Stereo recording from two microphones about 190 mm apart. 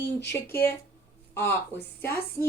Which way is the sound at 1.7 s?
55° left (ahead or behind).